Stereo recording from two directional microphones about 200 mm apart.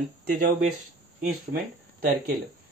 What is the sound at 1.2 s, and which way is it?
Speech, 45° right (ahead or behind).